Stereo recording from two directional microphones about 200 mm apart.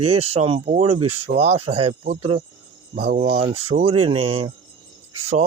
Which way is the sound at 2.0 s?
40° right (ahead or behind).